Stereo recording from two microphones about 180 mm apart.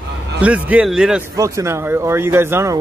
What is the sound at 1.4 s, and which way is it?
Speech, 15° right (ahead or behind).